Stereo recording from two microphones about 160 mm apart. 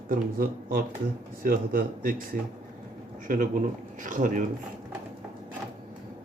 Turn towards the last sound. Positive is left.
turn(degrees=-55)  # may be behind; listen again after turning